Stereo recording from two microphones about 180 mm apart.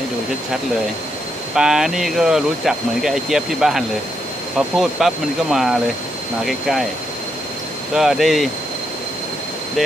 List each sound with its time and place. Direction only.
1.5 s speech: 5° right (ahead or behind)
7.9 s speech: centre (ahead or behind)